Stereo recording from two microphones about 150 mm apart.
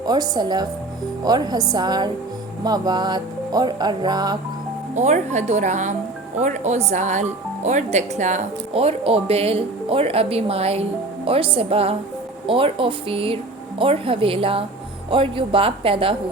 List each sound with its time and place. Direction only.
0.0 s music: 25° right (ahead or behind)
4.9 s a woman's voice: 50° right (ahead or behind)